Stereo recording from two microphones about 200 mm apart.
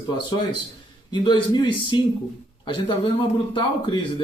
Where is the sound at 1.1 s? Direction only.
20° left (ahead or behind).